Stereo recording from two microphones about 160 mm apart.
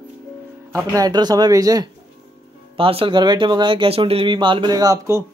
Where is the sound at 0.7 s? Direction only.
20° right (ahead or behind).